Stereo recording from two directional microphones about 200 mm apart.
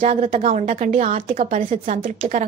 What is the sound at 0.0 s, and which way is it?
A woman's voice, 35° right (ahead or behind).